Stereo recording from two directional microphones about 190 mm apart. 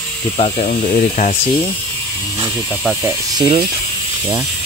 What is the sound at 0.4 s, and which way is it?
Speech, 35° left (ahead or behind).